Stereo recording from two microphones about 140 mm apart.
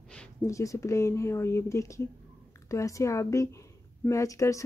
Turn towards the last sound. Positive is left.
turn(degrees=25)  # may be behind; listen again after turning